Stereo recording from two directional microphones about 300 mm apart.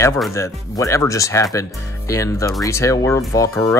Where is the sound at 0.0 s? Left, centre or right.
Centre.